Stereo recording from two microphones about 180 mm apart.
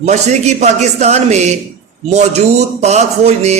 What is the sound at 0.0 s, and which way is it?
A man's voice, 40° right (ahead or behind).